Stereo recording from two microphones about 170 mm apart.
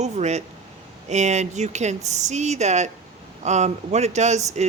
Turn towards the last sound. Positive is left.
turn(degrees=-40)  # may be behind; listen again after turning